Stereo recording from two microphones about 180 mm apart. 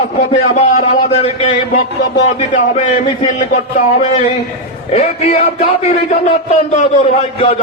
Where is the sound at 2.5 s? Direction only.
45° left (ahead or behind).